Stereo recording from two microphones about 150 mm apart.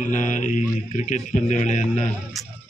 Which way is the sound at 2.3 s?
Centre (ahead or behind).